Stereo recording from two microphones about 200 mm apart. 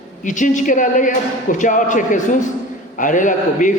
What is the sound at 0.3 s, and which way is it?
A man's voice, 40° left (ahead or behind).